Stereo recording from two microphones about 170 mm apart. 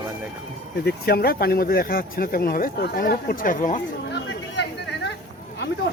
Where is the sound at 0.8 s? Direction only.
65° left (ahead or behind); by 3.8 s 50° left (ahead or behind).